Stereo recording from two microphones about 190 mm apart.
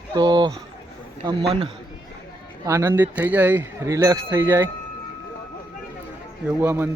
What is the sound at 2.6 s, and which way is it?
Speech, 15° right (ahead or behind).